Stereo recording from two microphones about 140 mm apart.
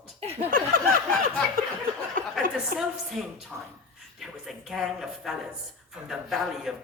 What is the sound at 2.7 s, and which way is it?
Speech, 90° right.